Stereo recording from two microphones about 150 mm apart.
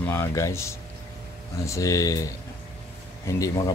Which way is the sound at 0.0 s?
15° left (ahead or behind).